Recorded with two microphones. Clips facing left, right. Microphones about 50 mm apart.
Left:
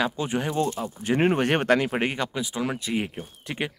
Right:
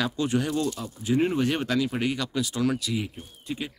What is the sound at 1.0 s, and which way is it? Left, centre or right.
Speech, left.